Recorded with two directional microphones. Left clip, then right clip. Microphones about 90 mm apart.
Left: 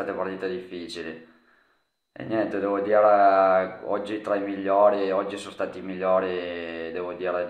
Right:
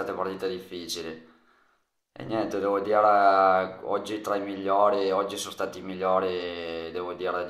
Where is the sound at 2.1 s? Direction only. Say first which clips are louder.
Left 3 dB; 20° right (ahead or behind).